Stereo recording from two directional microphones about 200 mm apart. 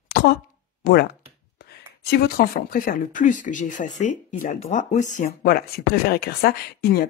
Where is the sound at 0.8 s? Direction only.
50° left (ahead or behind).